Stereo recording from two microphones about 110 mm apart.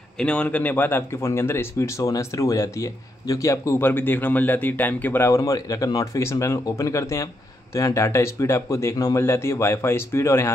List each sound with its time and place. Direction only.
0.2 s speech: 10° left (ahead or behind)